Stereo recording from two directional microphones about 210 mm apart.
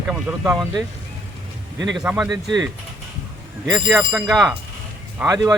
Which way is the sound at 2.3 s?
20° right (ahead or behind).